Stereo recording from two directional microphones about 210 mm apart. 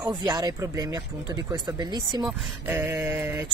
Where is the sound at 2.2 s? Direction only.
10° right (ahead or behind).